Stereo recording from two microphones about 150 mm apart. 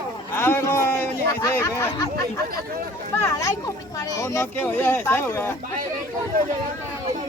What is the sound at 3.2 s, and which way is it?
A man's voice, 20° left (ahead or behind).